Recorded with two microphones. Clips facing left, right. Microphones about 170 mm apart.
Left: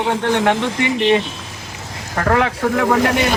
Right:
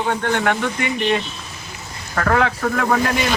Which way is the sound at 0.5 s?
90° left.